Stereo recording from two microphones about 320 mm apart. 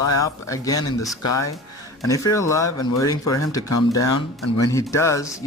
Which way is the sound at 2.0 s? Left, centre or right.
Centre.